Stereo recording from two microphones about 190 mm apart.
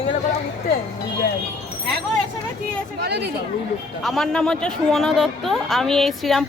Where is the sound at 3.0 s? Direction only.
60° right (ahead or behind).